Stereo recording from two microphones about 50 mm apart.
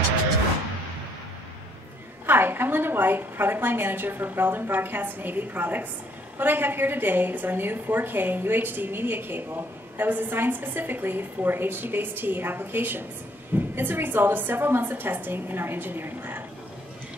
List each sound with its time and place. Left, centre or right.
2.2 s a woman's voice: right